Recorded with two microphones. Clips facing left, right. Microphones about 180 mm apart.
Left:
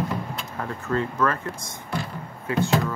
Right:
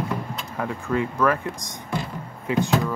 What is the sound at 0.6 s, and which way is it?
Speech, 15° right (ahead or behind).